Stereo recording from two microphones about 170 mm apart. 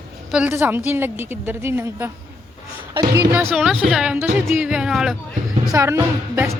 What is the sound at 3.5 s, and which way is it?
Music, centre (ahead or behind).